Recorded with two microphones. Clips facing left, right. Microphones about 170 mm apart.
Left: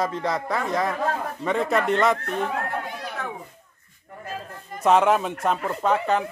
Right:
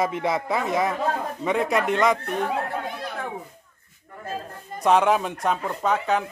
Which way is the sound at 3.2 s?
30° right (ahead or behind).